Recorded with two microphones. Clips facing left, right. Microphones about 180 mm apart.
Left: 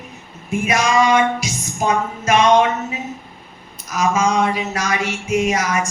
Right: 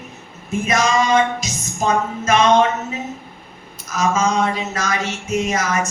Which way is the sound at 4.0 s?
10° left (ahead or behind).